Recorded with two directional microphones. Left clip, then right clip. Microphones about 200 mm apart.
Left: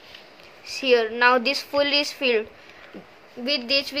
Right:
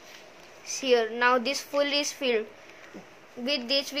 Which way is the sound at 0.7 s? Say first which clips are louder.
Left 4 dB; 15° left (ahead or behind).